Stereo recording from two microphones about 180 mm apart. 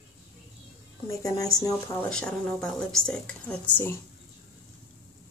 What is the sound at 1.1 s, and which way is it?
Speech, 20° left (ahead or behind).